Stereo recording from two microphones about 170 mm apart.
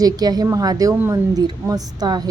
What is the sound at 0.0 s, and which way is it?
A woman's voice, 20° right (ahead or behind).